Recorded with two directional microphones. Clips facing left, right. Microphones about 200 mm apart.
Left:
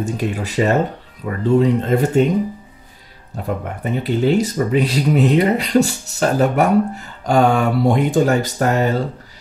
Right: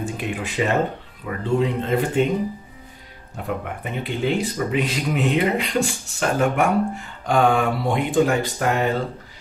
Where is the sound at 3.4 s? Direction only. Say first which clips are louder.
Left 3 dB; 35° left (ahead or behind).